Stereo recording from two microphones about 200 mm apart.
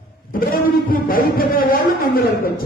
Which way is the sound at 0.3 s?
45° left (ahead or behind).